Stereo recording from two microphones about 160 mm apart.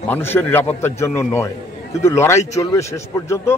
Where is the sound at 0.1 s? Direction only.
10° left (ahead or behind).